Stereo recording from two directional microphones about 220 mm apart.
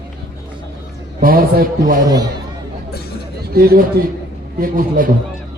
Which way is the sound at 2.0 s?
20° right (ahead or behind).